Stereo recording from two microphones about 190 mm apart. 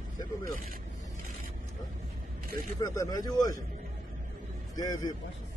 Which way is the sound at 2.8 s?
20° left (ahead or behind).